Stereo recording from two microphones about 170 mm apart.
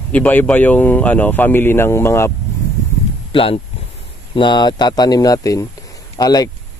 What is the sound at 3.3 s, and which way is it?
Speech, 35° left (ahead or behind).